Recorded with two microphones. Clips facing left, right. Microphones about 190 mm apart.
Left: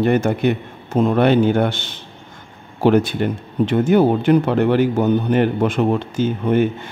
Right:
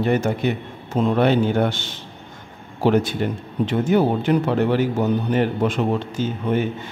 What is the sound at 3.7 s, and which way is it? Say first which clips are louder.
A man's voice: left 4 dB; 55° left (ahead or behind).